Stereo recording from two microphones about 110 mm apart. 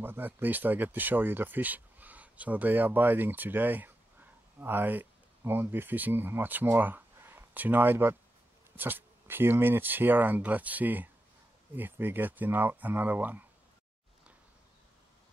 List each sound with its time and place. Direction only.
0.0 s speech: 20° right (ahead or behind)